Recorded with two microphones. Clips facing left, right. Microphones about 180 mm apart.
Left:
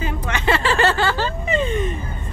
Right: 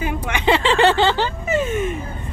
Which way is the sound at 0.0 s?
10° right (ahead or behind).